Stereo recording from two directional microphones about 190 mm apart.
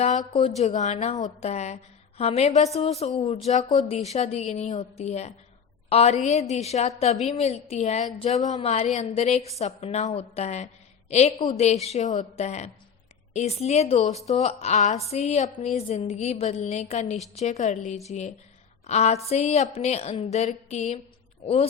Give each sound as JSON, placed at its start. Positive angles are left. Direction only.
{"t": 0.0, "sound": "a woman's voice", "side_deg": 40}